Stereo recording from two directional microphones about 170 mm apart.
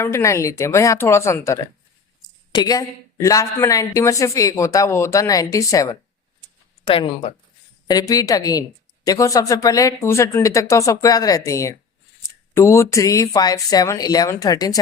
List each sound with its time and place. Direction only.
0.0 s a woman's voice: 15° left (ahead or behind)
6.8 s a woman's voice: 30° left (ahead or behind)